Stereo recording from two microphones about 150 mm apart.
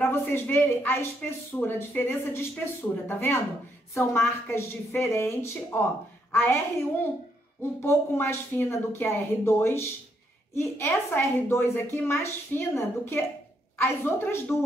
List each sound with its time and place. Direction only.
0.0 s speech: 15° left (ahead or behind)
7.8 s speech: 15° left (ahead or behind)